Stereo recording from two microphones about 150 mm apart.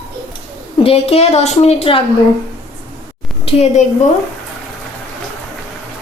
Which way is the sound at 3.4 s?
45° left (ahead or behind).